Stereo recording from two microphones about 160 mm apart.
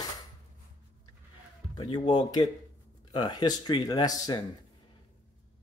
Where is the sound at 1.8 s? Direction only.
35° left (ahead or behind).